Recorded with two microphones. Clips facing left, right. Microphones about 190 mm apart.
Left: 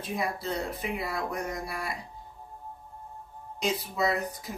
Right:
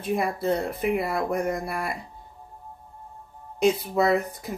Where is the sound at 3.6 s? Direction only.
55° right (ahead or behind).